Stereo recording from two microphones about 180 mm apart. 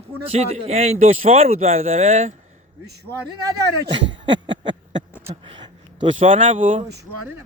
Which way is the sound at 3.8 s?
25° right (ahead or behind).